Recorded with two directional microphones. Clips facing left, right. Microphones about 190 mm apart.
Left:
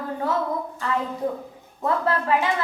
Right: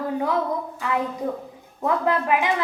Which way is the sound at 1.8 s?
15° right (ahead or behind).